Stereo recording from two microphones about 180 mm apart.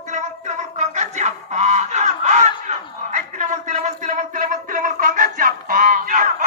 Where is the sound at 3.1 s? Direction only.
45° right (ahead or behind).